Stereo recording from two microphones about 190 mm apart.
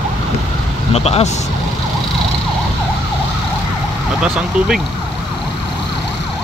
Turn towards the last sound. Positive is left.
turn(degrees=-5)  # may be behind; listen again after turning